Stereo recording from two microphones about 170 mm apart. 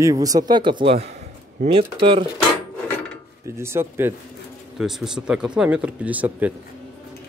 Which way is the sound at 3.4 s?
15° right (ahead or behind).